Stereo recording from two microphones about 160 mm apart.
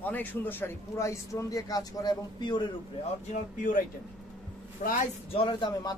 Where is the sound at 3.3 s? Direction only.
55° left (ahead or behind).